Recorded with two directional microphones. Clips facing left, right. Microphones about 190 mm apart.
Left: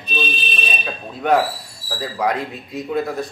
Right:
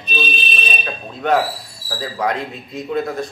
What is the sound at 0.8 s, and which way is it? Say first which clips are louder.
A man's voice: even; 5° left (ahead or behind).